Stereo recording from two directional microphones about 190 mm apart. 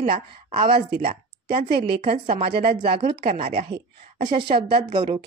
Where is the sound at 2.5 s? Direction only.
55° right (ahead or behind).